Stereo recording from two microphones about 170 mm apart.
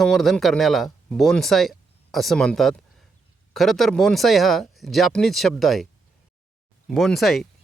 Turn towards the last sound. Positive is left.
turn(degrees=0)  # may be behind; listen again after turning